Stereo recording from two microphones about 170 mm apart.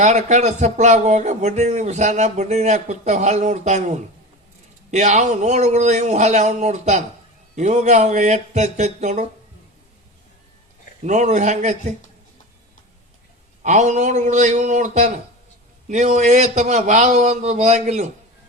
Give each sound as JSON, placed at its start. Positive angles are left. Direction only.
{"t": 0.0, "sound": "speech", "side_deg": -45}
{"t": 11.0, "sound": "speech", "side_deg": -45}
{"t": 13.6, "sound": "speech", "side_deg": -45}